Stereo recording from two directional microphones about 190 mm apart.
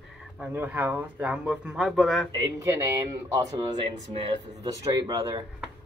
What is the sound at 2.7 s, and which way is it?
Speech, 15° right (ahead or behind).